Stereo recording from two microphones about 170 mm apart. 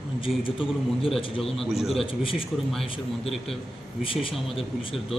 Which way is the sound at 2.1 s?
30° left (ahead or behind).